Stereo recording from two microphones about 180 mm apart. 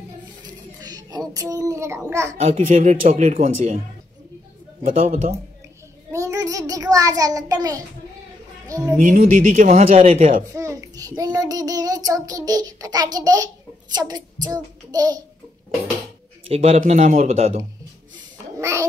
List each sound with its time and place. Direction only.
0.4 s a sound: 20° right (ahead or behind)
1.3 s child singing: 20° right (ahead or behind)
2.4 s speech: 45° right (ahead or behind)
4.8 s speech: 45° right (ahead or behind)
6.1 s a child's voice: 15° right (ahead or behind)
8.9 s speech: 50° right (ahead or behind)
10.5 s child singing: 15° right (ahead or behind)
16.4 s a man's voice: 35° right (ahead or behind)
18.1 s a sound: 15° right (ahead or behind)